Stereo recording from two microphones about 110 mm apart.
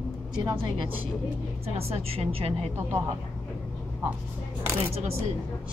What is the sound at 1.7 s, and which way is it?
Speech, 65° right (ahead or behind).